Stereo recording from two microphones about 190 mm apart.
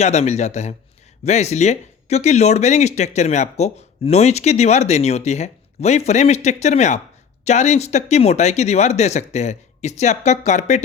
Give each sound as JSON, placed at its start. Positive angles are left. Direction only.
{"t": 0.0, "sound": "speech", "side_deg": 35}